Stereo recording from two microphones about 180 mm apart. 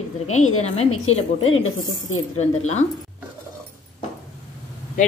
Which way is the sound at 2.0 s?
40° left (ahead or behind).